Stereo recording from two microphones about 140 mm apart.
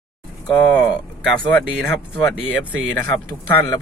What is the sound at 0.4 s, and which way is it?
Speech, 5° left (ahead or behind).